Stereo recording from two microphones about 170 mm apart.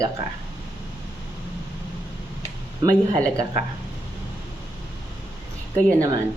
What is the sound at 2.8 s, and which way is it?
Speech, 20° right (ahead or behind).